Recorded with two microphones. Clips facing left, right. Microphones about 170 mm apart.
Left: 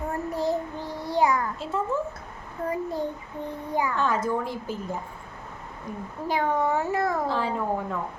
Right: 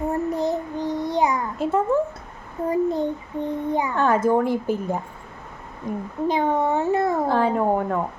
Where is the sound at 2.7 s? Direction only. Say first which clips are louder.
Right 8 dB; 20° right (ahead or behind).